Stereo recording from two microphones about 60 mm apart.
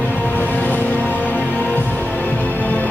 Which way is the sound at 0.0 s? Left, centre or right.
Left.